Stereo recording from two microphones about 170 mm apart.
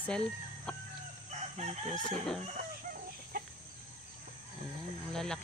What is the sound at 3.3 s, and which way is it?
Chicken, 60° right (ahead or behind).